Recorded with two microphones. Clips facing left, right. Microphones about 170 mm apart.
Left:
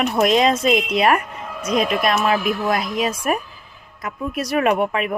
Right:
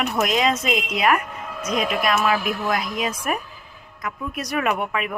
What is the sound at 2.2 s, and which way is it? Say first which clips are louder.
Speech: left 3 dB; 30° left (ahead or behind).